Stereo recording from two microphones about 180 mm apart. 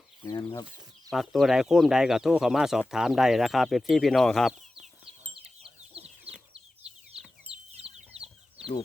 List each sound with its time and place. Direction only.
0.3 s speech: 20° left (ahead or behind)
1.1 s speech: centre (ahead or behind)
4.7 s chicken: 30° right (ahead or behind)
7.4 s a sound: 35° right (ahead or behind)
7.9 s chicken: 35° right (ahead or behind)